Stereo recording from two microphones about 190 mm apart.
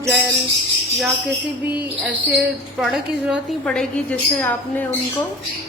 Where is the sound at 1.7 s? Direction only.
10° right (ahead or behind); by 4.8 s 10° left (ahead or behind).